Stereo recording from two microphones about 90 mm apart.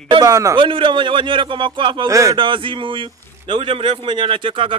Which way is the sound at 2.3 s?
70° right (ahead or behind).